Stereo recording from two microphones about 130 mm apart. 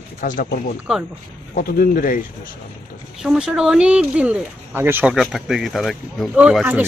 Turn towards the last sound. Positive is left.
turn(degrees=-10)  # may be behind; listen again after turning